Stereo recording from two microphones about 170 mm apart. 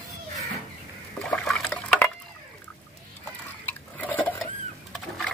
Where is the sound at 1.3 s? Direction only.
5° left (ahead or behind).